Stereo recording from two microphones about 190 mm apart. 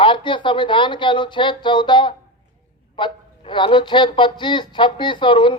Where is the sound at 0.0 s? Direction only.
25° left (ahead or behind).